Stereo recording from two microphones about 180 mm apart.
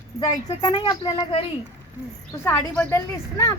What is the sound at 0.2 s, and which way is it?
Speech, 25° left (ahead or behind).